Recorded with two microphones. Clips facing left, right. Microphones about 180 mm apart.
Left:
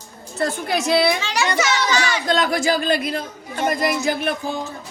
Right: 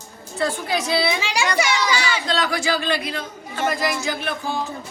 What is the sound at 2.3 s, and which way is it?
Speech, 50° left (ahead or behind).